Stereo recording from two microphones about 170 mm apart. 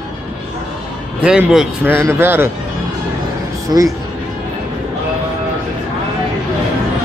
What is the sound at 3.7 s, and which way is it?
Speech, 20° right (ahead or behind).